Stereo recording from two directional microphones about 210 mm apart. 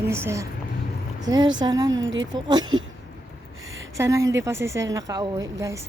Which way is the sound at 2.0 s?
65° right (ahead or behind).